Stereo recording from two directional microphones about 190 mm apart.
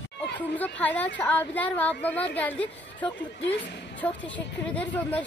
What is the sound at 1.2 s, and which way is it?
A woman's voice, 10° left (ahead or behind).